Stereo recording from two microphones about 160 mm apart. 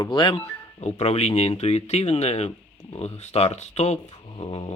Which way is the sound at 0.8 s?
40° left (ahead or behind).